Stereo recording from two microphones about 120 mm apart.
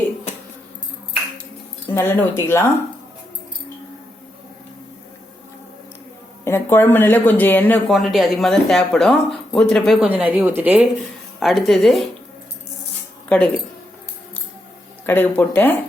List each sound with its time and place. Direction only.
1.9 s speech: 20° left (ahead or behind)
6.4 s speech: 20° left (ahead or behind)
7.9 s speech: centre (ahead or behind)
10.1 s speech: 15° right (ahead or behind)
11.3 s speech: centre (ahead or behind)
13.2 s speech: 10° left (ahead or behind)
15.0 s speech: 15° left (ahead or behind)